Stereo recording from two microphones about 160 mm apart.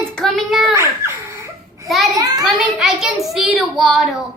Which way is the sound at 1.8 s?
Centre (ahead or behind).